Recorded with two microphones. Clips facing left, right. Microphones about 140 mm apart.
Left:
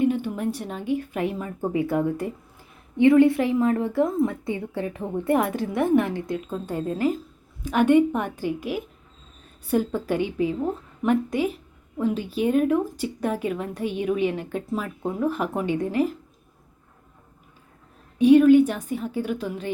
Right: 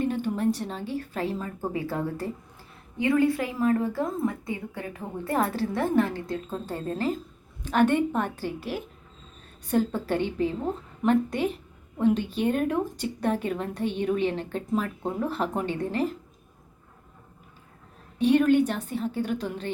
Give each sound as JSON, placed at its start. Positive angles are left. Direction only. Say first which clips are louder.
{"t": 0.0, "sound": "a woman's voice", "louder": "left 2 dB", "side_deg": 15}
{"t": 18.2, "sound": "a woman's voice", "louder": "left 6 dB", "side_deg": 10}